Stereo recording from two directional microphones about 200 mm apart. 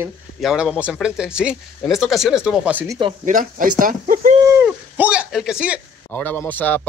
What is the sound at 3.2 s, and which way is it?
Speech, 40° right (ahead or behind).